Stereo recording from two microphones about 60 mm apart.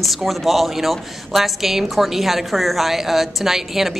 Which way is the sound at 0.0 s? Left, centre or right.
Centre.